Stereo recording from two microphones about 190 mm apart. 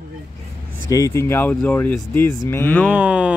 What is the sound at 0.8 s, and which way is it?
Speech, 15° left (ahead or behind).